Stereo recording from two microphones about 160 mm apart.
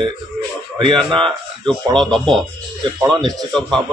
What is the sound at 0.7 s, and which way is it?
Speech, 30° right (ahead or behind).